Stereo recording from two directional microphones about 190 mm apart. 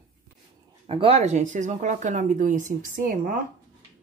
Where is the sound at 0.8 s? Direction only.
30° right (ahead or behind); by 3.4 s 45° right (ahead or behind).